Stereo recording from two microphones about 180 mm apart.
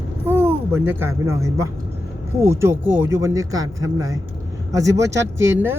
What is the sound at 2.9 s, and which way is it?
Speech, 90° right.